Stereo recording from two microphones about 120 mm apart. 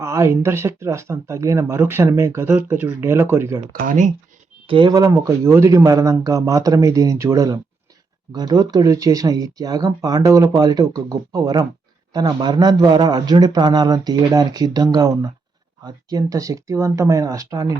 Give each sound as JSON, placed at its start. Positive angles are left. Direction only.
{"t": 0.0, "sound": "speech", "side_deg": -25}
{"t": 3.8, "sound": "speech", "side_deg": -90}
{"t": 4.7, "sound": "speech", "side_deg": -45}
{"t": 4.9, "sound": "speech", "side_deg": -25}